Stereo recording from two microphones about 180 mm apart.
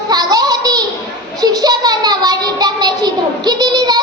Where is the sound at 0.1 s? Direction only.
20° right (ahead or behind).